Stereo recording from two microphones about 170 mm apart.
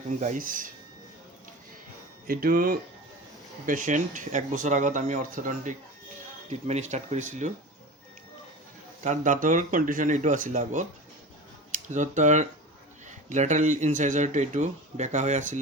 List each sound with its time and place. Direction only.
0.2 s speech: 50° right (ahead or behind)
2.2 s speech: 60° right (ahead or behind)
9.0 s speech: 50° right (ahead or behind)
11.9 s speech: 45° right (ahead or behind)